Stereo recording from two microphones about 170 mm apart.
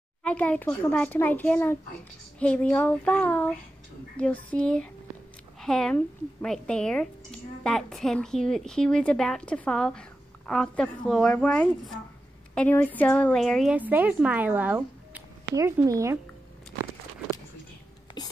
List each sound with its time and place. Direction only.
0.2 s speech: 5° left (ahead or behind)
0.7 s child singing: 10° left (ahead or behind)
5.6 s a woman's voice: 5° left (ahead or behind); by 16.2 s 20° right (ahead or behind)
18.2 s whispering: 25° left (ahead or behind)